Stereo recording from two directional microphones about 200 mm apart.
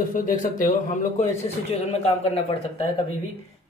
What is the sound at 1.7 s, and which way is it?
Speech, 30° left (ahead or behind).